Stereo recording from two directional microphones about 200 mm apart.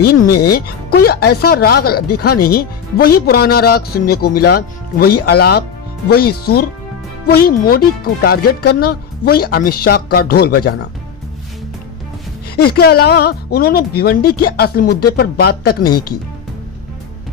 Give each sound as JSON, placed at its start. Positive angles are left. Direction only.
{"t": 0.0, "sound": "speech", "side_deg": 50}
{"t": 12.5, "sound": "speech", "side_deg": 50}